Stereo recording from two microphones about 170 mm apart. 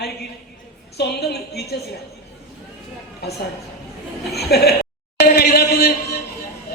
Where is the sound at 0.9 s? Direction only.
70° left (ahead or behind).